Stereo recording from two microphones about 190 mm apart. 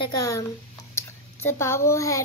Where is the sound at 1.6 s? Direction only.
15° left (ahead or behind).